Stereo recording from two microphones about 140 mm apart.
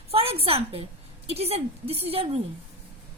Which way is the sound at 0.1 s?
45° right (ahead or behind).